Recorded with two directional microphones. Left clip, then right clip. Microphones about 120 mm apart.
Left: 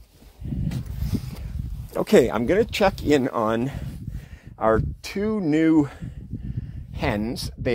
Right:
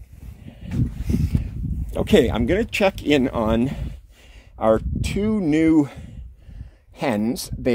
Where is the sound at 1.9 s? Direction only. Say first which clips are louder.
Even; centre (ahead or behind).